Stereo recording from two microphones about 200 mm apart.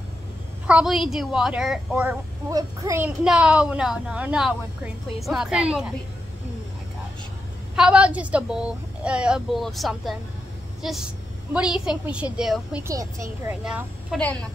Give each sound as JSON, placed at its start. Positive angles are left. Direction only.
{"t": 0.7, "sound": "a woman's voice", "side_deg": -5}
{"t": 2.5, "sound": "a child's voice", "side_deg": -15}
{"t": 3.3, "sound": "a woman's voice", "side_deg": -5}
{"t": 7.7, "sound": "a woman's voice", "side_deg": -5}
{"t": 12.8, "sound": "a child's voice", "side_deg": -15}
{"t": 13.5, "sound": "a woman's voice", "side_deg": -5}